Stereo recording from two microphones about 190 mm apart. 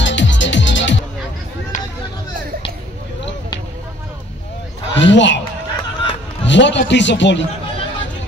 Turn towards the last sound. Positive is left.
turn(degrees=70)  # may be behind; listen again after turning